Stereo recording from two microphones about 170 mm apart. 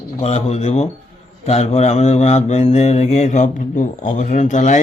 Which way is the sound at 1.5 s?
40° left (ahead or behind).